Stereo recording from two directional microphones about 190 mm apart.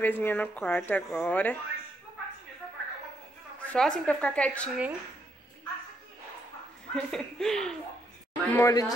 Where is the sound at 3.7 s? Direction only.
5° left (ahead or behind).